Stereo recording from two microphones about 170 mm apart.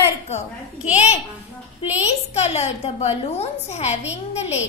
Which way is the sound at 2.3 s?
40° left (ahead or behind).